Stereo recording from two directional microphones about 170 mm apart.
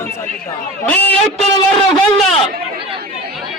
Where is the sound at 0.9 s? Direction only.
10° left (ahead or behind).